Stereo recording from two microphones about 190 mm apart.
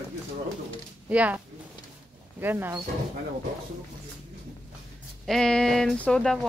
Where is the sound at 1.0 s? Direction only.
10° right (ahead or behind).